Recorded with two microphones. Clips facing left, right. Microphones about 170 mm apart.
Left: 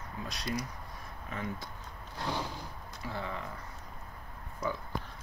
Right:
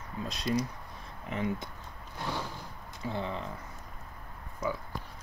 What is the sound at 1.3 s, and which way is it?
Speech, 20° right (ahead or behind).